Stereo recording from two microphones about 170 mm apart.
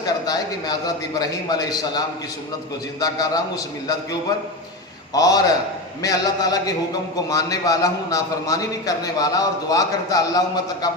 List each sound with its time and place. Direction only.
0.0 s a man's voice: 25° left (ahead or behind)
5.1 s a man's voice: 20° left (ahead or behind)